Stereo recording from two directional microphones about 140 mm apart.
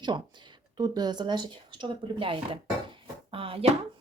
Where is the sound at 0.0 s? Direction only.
30° right (ahead or behind).